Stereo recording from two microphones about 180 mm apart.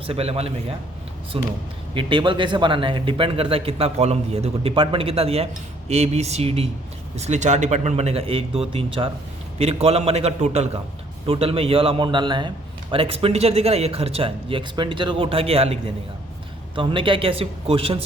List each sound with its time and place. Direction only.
0.1 s a man's voice: 35° right (ahead or behind)